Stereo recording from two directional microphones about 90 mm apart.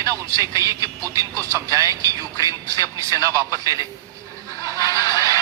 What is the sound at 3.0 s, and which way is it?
Speech, 45° left (ahead or behind).